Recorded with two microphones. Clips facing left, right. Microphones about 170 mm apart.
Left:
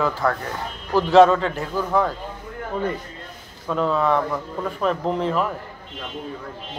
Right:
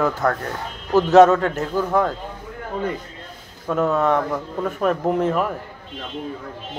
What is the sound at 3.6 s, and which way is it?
A man's voice, 45° right (ahead or behind).